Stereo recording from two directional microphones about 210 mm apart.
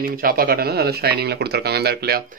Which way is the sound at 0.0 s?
45° right (ahead or behind).